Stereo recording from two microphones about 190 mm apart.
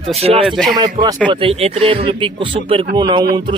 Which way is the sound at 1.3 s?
30° right (ahead or behind).